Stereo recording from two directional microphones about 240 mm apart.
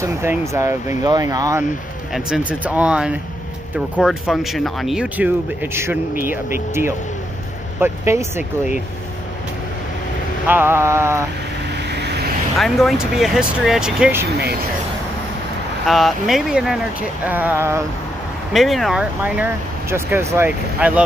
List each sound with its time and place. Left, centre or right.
0.0 s speech: centre
2.1 s speech: centre
10.4 s speech: centre
11.9 s vehicle: right
12.5 s speech: centre
15.9 s speech: centre
18.5 s speech: centre